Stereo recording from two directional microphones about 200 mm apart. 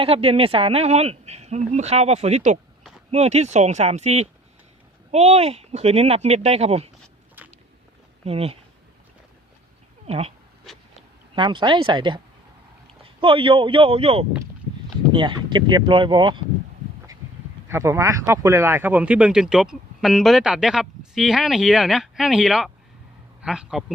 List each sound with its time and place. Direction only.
0.0 s speech: 30° right (ahead or behind)
7.4 s biting: 10° right (ahead or behind)
8.2 s speech: 30° right (ahead or behind)
10.1 s speech: 30° right (ahead or behind)
11.3 s speech: 25° right (ahead or behind)
17.7 s a man's voice: 15° right (ahead or behind)